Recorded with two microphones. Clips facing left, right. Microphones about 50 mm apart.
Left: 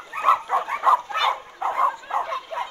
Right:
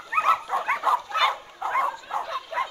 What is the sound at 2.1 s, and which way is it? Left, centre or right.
Bow-wow, left.